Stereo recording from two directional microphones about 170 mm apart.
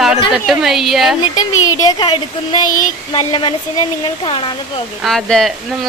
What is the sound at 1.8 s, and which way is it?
Speech, 25° left (ahead or behind).